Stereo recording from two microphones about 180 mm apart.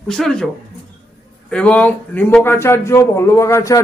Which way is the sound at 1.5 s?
5° left (ahead or behind).